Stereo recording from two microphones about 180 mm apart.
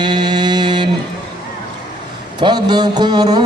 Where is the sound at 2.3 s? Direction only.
25° right (ahead or behind).